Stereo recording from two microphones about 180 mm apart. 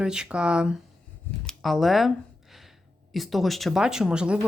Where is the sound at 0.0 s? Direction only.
5° right (ahead or behind).